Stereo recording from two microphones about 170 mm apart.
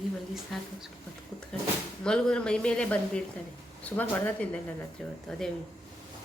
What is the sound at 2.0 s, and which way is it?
A woman's voice, 5° left (ahead or behind).